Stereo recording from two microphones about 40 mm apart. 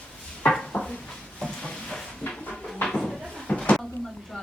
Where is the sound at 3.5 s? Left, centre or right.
Left.